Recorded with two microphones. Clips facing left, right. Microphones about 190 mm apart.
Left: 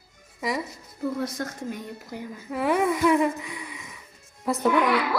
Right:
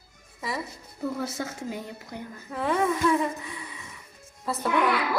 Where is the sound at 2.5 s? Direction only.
10° left (ahead or behind).